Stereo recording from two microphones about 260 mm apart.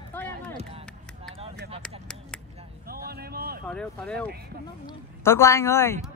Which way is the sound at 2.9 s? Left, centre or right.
Right.